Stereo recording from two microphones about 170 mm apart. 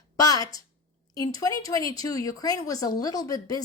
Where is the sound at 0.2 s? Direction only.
20° left (ahead or behind).